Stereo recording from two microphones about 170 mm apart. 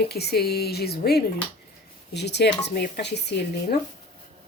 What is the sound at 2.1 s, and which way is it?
Speech, 80° left.